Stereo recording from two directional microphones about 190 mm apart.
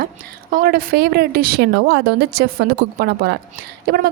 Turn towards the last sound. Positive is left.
turn(degrees=-55)  # may be behind; listen again after turning